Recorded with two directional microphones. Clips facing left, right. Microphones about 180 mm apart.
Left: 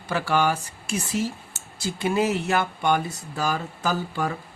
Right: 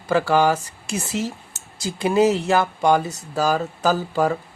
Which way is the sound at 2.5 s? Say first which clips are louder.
Right 5 dB; 35° right (ahead or behind).